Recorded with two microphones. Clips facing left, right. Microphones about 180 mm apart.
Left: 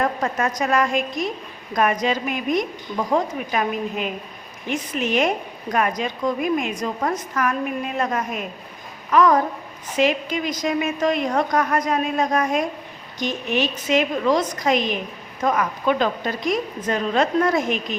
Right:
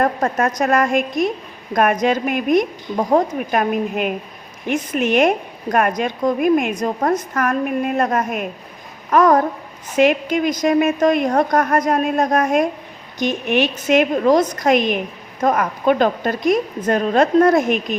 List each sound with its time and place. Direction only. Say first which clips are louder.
0.0 s a woman's voice: right 4 dB; 45° right (ahead or behind)
2.9 s a woman's voice: right 5 dB; 40° right (ahead or behind)
9.0 s babbling: right 3 dB; 45° right (ahead or behind)
10.0 s a woman's voice: right 5 dB; 55° right (ahead or behind)
13.1 s a woman's voice: right 5 dB; 60° right (ahead or behind)